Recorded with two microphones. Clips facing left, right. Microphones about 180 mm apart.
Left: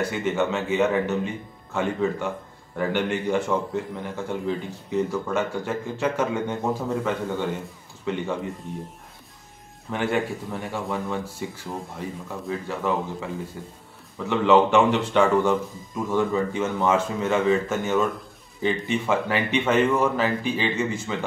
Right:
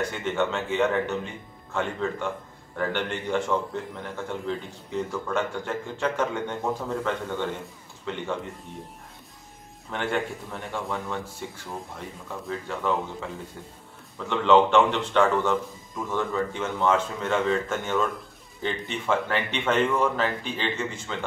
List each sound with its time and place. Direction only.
0.0 s speech: 5° left (ahead or behind)
9.8 s speech: 10° left (ahead or behind)